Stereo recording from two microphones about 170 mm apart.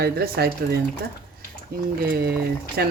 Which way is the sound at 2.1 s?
70° right (ahead or behind).